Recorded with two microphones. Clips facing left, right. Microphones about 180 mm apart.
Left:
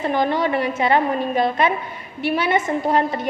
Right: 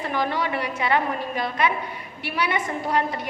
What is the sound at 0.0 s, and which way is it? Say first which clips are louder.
A woman's voice: left 6 dB; 25° left (ahead or behind).